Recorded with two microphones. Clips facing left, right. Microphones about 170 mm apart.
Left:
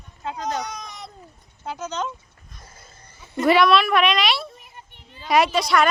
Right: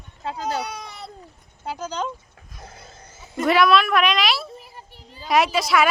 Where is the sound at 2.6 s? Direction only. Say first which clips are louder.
Right 7 dB; 75° right (ahead or behind).